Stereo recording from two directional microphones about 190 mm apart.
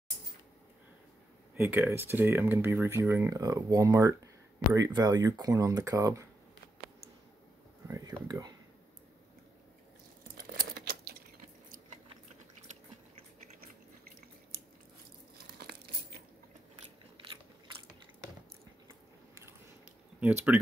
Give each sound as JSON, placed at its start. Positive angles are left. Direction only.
{"t": 1.6, "sound": "speech", "side_deg": -10}
{"t": 7.9, "sound": "speech", "side_deg": -20}
{"t": 10.3, "sound": "a sound", "side_deg": -55}
{"t": 20.2, "sound": "speech", "side_deg": -10}